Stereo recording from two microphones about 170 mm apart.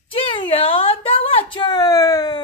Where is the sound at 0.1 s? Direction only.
30° left (ahead or behind).